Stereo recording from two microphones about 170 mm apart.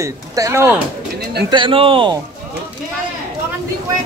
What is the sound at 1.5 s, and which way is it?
Speech, 30° right (ahead or behind).